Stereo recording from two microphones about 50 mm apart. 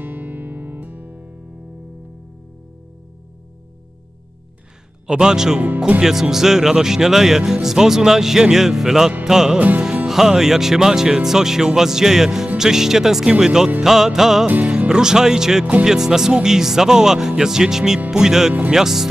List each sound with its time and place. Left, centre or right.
0.0 s music: right
5.0 s speech: centre
9.2 s music: centre
9.6 s music: right
10.0 s speech: centre